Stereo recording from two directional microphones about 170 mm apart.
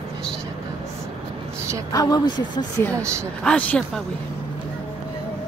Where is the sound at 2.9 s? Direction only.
15° right (ahead or behind).